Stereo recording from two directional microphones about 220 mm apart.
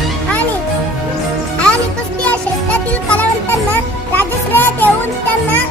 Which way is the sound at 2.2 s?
5° left (ahead or behind).